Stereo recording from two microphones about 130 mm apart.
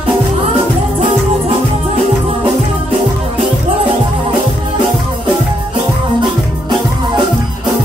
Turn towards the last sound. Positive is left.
turn(degrees=-35)  # may be behind; listen again after turning